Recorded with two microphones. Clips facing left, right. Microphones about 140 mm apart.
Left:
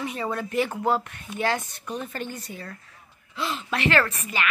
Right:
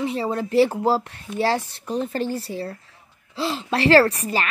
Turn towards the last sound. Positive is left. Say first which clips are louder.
# right 7 dB
turn(degrees=-35)  # may be behind; listen again after turning